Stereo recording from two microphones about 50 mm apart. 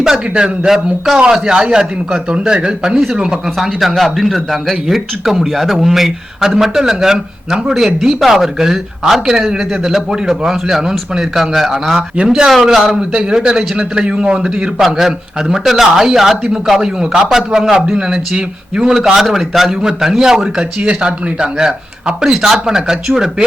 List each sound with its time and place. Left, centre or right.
0.0 s a man's voice: centre
3.8 s a man's voice: centre
11.9 s speech: right
12.6 s speech: centre